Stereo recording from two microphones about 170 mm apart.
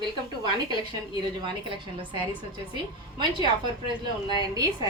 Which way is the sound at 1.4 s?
25° right (ahead or behind).